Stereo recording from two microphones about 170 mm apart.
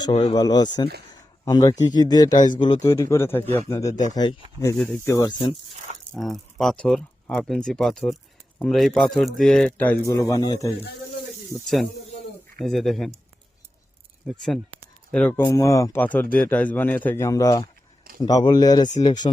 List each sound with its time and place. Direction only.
0.3 s speech: 25° left (ahead or behind)
6.1 s speech: centre (ahead or behind); by 10.7 s 20° left (ahead or behind)
11.6 s speech: centre (ahead or behind)
14.3 s speech: 5° left (ahead or behind); by 19.3 s 25° left (ahead or behind)